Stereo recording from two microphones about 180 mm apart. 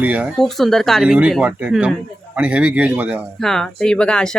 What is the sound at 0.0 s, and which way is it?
Speech, 5° right (ahead or behind).